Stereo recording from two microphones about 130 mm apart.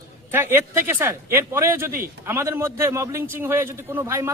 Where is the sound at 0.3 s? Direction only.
15° right (ahead or behind).